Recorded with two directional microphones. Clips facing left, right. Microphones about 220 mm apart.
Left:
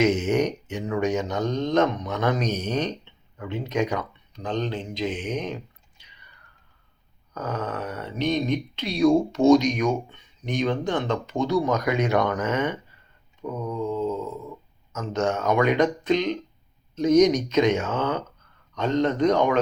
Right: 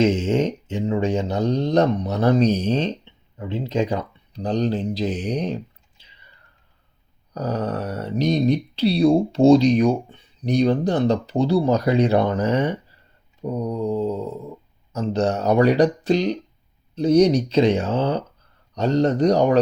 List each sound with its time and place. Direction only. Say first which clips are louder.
0.0 s speech: right 2 dB; 30° right (ahead or behind)
6.0 s whispering: right 2 dB; 25° right (ahead or behind)
7.3 s speech: right 5 dB; 35° right (ahead or behind)